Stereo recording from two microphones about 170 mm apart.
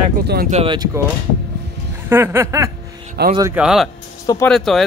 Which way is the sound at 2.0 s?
15° right (ahead or behind).